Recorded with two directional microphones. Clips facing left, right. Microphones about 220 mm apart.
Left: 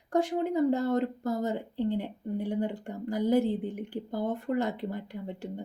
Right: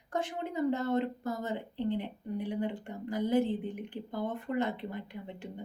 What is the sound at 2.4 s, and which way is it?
A woman's voice, 40° left (ahead or behind).